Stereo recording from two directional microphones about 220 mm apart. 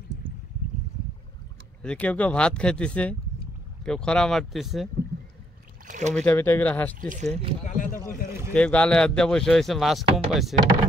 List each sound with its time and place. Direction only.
1.8 s speech: 5° left (ahead or behind)
5.9 s speech: 35° right (ahead or behind)
6.1 s speech: 10° left (ahead or behind)
7.0 s speech: 35° right (ahead or behind)
7.6 s speech: 35° left (ahead or behind)
8.3 s boat: 10° right (ahead or behind)
8.5 s speech: 5° left (ahead or behind)